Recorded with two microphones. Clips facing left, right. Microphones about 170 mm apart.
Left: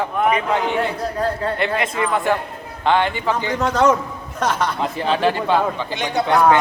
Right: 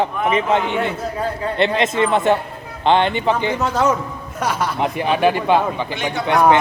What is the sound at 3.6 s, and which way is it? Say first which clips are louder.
A man's voice: left 2 dB; 5° right (ahead or behind).